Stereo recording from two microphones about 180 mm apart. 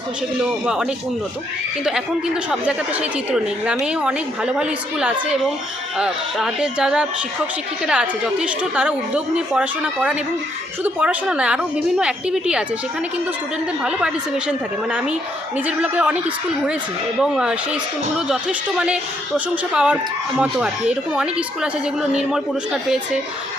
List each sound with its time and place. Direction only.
0.6 s a woman's voice: 5° right (ahead or behind)
13.8 s a woman's voice: 5° right (ahead or behind)
17.2 s a woman's voice: 5° right (ahead or behind)
18.8 s a woman's voice: 5° right (ahead or behind)